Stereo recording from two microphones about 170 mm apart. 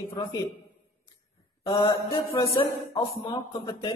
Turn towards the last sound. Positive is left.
turn(degrees=30)  # may be behind; listen again after turning